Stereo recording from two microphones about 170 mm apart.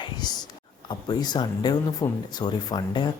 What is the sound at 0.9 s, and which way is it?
Speech, 25° left (ahead or behind).